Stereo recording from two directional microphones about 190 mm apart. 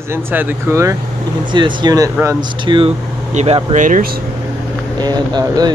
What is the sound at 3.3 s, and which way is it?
Speech, 35° right (ahead or behind).